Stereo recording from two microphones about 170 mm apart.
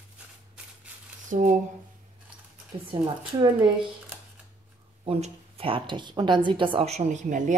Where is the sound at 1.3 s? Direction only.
50° right (ahead or behind).